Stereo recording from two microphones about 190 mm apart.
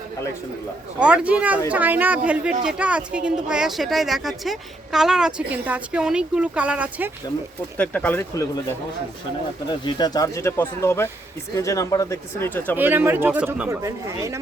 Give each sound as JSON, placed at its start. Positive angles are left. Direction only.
{"t": 0.9, "sound": "speech", "side_deg": -5}
{"t": 7.8, "sound": "speech", "side_deg": 5}
{"t": 9.6, "sound": "speech", "side_deg": 25}
{"t": 12.7, "sound": "speech", "side_deg": -10}